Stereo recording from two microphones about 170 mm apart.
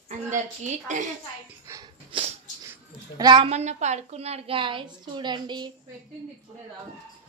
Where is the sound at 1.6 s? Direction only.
20° right (ahead or behind).